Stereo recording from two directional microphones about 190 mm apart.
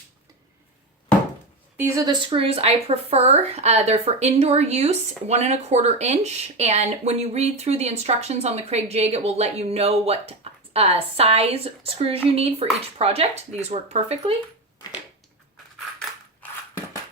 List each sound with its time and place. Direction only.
2.0 s speech: 30° right (ahead or behind)
16.0 s crushing: 10° left (ahead or behind)